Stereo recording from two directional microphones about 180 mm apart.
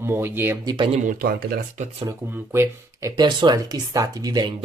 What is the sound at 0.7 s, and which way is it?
Speech, 30° right (ahead or behind).